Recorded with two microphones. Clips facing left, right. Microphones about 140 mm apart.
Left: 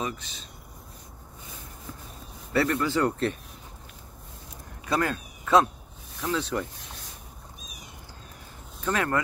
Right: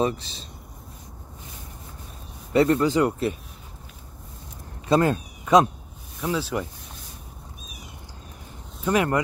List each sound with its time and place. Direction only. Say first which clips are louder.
0.0 s speech: right 9 dB; 30° right (ahead or behind)
2.5 s speech: right 6 dB; 20° right (ahead or behind)
4.8 s speech: right 7 dB; 25° right (ahead or behind)
8.8 s speech: right 5 dB; 15° right (ahead or behind)